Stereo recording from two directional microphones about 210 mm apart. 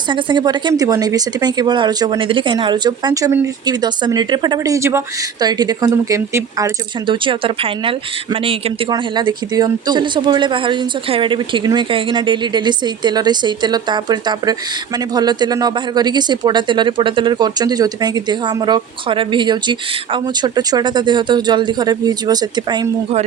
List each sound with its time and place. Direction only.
0.1 s speech: 20° right (ahead or behind)